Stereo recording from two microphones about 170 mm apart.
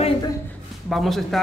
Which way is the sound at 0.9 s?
Centre (ahead or behind).